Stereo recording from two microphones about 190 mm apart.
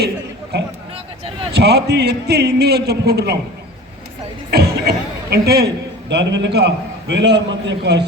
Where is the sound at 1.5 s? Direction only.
60° right (ahead or behind).